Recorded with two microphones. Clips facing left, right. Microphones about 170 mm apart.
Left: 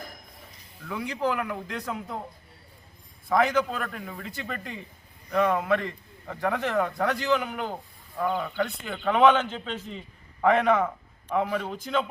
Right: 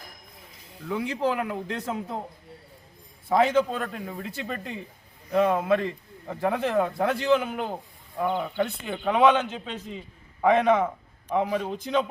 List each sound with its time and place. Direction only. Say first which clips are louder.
0.9 s a man's voice: right 2 dB; 25° right (ahead or behind)
3.2 s a man's voice: right 2 dB; 25° right (ahead or behind)